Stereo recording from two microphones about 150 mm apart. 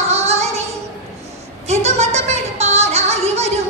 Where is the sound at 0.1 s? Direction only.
45° right (ahead or behind).